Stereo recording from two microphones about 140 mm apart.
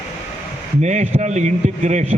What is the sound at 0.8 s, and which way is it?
Speech, 55° right (ahead or behind).